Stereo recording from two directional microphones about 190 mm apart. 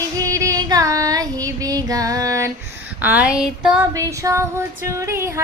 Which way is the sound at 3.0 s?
10° right (ahead or behind).